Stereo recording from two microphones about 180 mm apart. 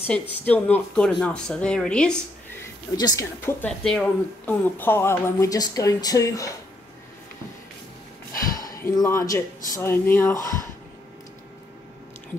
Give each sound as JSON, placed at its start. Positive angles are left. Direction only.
{"t": 0.0, "sound": "a woman's voice", "side_deg": 10}
{"t": 3.0, "sound": "a woman's voice", "side_deg": 20}
{"t": 8.3, "sound": "speech", "side_deg": 20}